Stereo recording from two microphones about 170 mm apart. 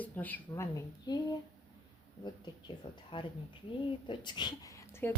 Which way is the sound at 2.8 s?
25° left (ahead or behind).